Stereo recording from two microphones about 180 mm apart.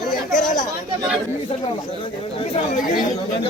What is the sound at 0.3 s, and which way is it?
Chatter, 45° left (ahead or behind).